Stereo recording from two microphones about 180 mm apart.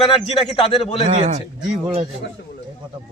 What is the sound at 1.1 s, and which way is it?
Speech, 40° right (ahead or behind).